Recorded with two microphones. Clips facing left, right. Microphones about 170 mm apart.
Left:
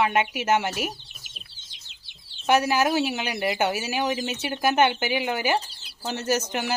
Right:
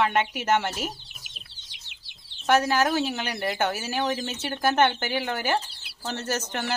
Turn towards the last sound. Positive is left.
turn(degrees=10)  # may be behind; listen again after turning